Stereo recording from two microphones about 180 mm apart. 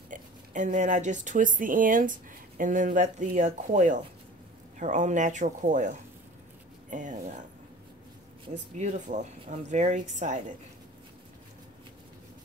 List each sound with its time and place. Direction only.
0.1 s speech: 45° right (ahead or behind)
8.7 s speech: 40° right (ahead or behind)